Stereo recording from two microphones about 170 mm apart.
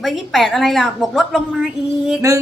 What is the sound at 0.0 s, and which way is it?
A woman's voice, centre (ahead or behind).